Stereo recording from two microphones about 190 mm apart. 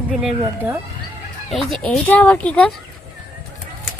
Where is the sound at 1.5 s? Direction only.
Centre (ahead or behind).